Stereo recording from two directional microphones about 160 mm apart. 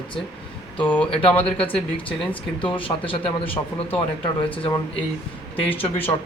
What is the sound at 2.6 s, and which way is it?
A man's voice, 35° left (ahead or behind).